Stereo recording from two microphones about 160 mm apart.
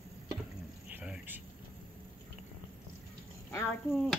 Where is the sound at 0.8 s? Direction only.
10° right (ahead or behind).